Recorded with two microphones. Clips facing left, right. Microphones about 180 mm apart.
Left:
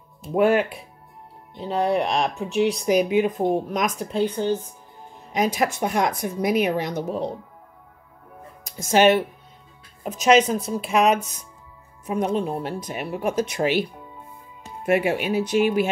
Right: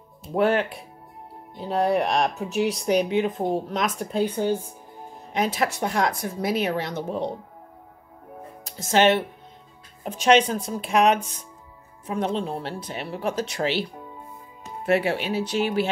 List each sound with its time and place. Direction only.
0.3 s speech: 10° left (ahead or behind)
4.1 s speech: 5° right (ahead or behind)
5.3 s speech: 15° left (ahead or behind)
8.6 s speech: 15° left (ahead or behind)
10.2 s speech: 5° left (ahead or behind)
12.1 s speech: 10° left (ahead or behind)
14.9 s speech: 10° left (ahead or behind)